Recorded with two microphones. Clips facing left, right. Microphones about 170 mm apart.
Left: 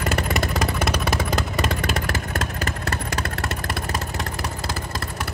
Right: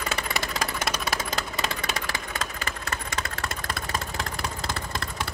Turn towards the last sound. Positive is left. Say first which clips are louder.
# left 5 dB
turn(degrees=65)  # may be behind; listen again after turning